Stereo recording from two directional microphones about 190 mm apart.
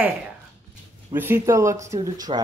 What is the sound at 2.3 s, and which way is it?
Speech, 25° right (ahead or behind).